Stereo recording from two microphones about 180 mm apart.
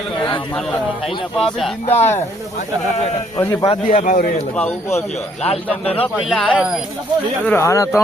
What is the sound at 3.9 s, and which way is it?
Speech, 45° left (ahead or behind).